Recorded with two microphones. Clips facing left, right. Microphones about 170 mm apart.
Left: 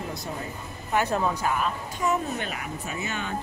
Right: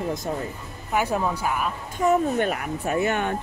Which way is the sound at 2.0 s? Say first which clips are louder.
Right 7 dB; 50° right (ahead or behind).